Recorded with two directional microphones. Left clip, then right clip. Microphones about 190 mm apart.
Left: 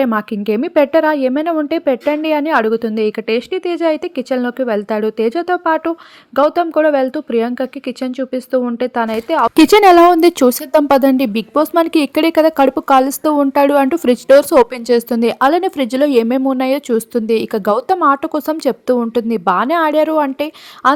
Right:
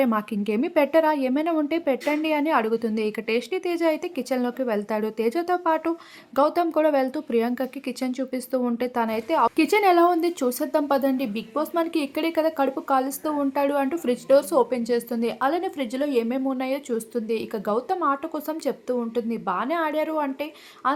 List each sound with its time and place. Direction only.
0.0 s a woman's voice: 25° left (ahead or behind)
9.6 s speech: 55° left (ahead or behind)